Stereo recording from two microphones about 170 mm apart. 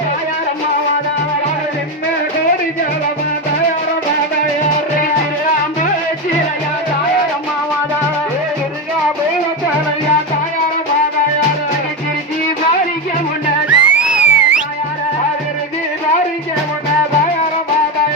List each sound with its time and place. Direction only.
13.7 s music: 10° right (ahead or behind)